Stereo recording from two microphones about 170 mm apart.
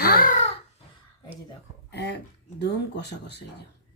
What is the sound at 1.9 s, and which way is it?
Speech, 80° left.